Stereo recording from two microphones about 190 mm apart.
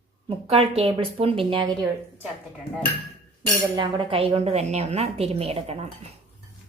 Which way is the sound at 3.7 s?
25° right (ahead or behind).